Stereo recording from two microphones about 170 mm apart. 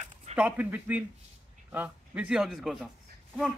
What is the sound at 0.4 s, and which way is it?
A man's voice, 10° right (ahead or behind).